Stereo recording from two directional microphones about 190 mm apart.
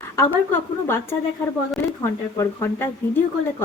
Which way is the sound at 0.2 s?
15° left (ahead or behind).